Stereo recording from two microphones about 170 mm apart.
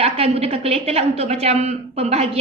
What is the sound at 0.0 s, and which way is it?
Speech, 35° right (ahead or behind).